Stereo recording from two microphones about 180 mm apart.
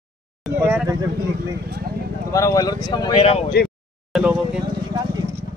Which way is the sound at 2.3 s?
15° left (ahead or behind).